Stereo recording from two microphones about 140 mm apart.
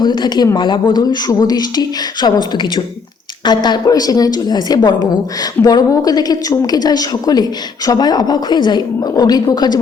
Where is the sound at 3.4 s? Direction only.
30° left (ahead or behind).